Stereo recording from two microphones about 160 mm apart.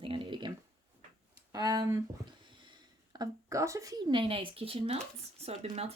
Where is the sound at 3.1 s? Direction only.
20° right (ahead or behind).